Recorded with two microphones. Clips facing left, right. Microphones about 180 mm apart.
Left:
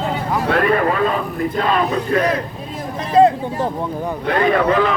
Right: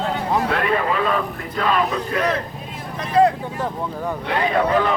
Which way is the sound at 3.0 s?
25° left (ahead or behind).